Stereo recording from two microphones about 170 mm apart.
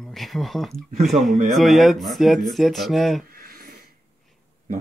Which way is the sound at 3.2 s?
60° right (ahead or behind).